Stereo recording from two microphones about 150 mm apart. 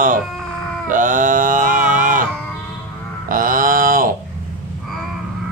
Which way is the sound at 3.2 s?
65° right (ahead or behind).